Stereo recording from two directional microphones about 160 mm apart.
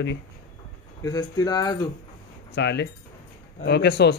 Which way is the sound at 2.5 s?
90° left.